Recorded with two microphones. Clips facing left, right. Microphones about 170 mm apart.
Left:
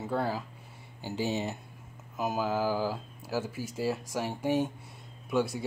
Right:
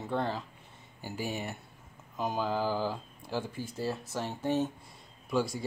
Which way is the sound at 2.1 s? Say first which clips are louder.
Left 1 dB; 5° left (ahead or behind).